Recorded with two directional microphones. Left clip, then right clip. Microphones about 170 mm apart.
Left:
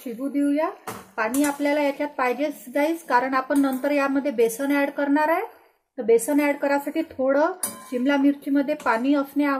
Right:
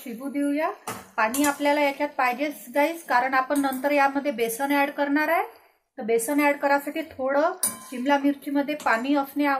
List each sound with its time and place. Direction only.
0.3 s a woman's voice: 70° left (ahead or behind)